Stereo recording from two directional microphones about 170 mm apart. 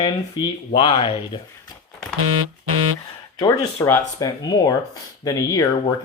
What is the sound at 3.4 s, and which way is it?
Speech, 20° left (ahead or behind).